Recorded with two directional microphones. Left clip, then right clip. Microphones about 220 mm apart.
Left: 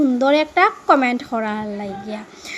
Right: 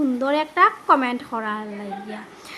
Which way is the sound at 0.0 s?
15° left (ahead or behind).